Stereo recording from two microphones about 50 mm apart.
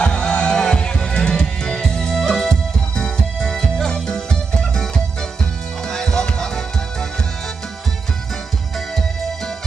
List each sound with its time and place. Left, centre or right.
0.0 s music: centre
5.9 s music: centre